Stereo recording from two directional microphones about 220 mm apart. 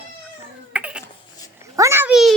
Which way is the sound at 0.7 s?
5° right (ahead or behind).